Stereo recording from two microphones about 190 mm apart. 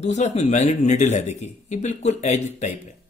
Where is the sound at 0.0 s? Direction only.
35° left (ahead or behind).